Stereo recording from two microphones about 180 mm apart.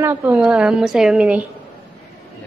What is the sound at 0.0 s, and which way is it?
A woman's voice, 10° right (ahead or behind).